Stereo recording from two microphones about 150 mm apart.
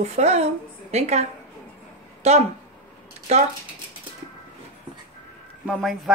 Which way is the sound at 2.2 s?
45° right (ahead or behind).